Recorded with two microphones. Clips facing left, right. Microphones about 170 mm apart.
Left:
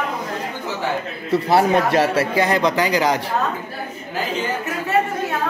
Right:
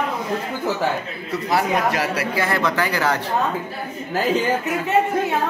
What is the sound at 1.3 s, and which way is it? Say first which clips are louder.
Speech: left 5 dB; 30° left (ahead or behind).